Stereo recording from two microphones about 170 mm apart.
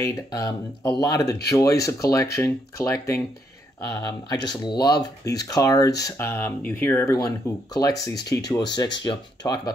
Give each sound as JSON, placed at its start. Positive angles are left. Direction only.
{"t": 0.0, "sound": "speech", "side_deg": 20}